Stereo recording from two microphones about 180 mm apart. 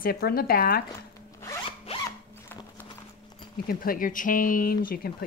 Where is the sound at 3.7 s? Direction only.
55° left (ahead or behind).